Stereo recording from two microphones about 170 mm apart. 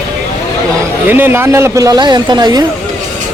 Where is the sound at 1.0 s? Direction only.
10° right (ahead or behind).